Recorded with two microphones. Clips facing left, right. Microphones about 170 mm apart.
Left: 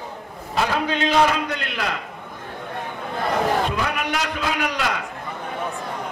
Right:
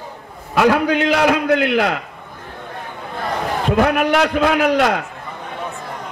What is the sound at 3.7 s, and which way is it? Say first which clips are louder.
A man's voice: right 10 dB; 55° right (ahead or behind).